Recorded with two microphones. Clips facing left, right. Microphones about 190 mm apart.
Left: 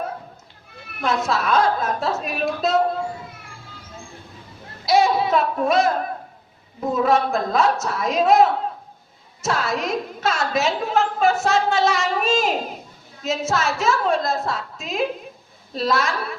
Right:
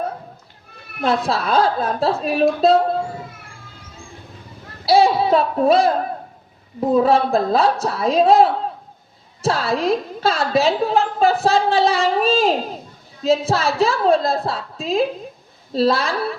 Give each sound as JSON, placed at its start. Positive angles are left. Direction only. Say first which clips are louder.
{"t": 1.0, "sound": "a woman's voice", "louder": "right 2 dB", "side_deg": -30}
{"t": 4.9, "sound": "a woman's voice", "louder": "right 3 dB", "side_deg": -30}
{"t": 6.9, "sound": "a woman's voice", "louder": "right 4 dB", "side_deg": -30}